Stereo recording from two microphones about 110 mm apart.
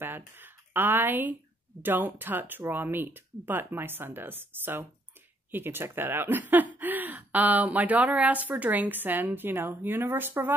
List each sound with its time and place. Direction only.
0.4 s speech: 20° right (ahead or behind)